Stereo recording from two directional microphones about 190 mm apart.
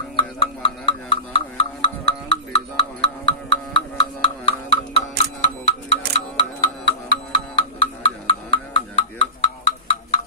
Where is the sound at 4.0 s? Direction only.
30° left (ahead or behind).